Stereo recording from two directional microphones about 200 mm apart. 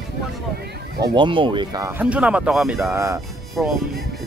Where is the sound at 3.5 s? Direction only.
Centre (ahead or behind).